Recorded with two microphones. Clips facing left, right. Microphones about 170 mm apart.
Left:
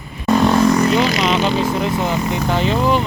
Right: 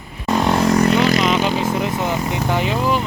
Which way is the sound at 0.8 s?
55° right (ahead or behind).